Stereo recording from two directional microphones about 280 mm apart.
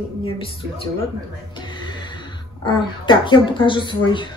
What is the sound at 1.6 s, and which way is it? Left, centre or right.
Music, centre.